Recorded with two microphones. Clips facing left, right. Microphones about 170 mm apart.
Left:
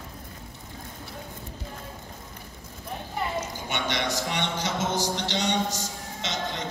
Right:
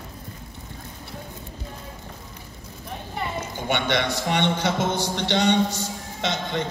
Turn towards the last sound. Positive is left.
turn(degrees=-55)  # may be behind; listen again after turning